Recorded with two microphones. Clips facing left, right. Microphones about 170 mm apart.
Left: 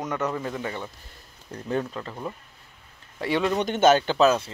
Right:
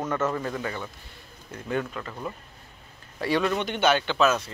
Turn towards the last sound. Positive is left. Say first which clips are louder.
# left 3 dB
turn(degrees=30)  # may be behind; listen again after turning